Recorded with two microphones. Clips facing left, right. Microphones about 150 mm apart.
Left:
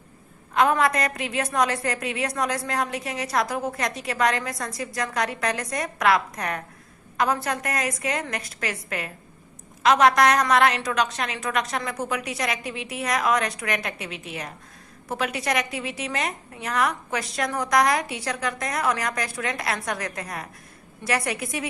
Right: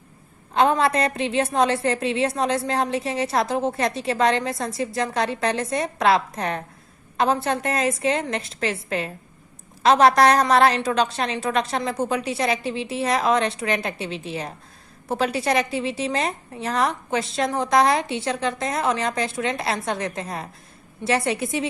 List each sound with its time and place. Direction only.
0.5 s a woman's voice: 30° right (ahead or behind)